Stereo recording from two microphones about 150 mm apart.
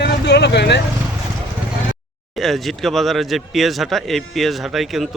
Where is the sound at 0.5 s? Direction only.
90° left.